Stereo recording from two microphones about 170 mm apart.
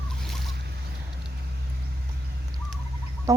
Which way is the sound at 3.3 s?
20° right (ahead or behind).